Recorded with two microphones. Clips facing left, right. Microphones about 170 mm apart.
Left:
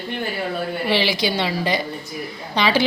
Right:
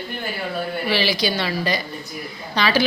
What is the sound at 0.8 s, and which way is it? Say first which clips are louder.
A woman's voice: left 1 dB; 20° left (ahead or behind).